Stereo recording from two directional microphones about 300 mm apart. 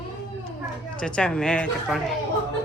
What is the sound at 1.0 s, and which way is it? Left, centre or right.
Speech, centre.